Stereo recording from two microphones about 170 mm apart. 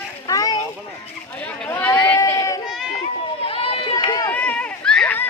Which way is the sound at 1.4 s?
10° left (ahead or behind).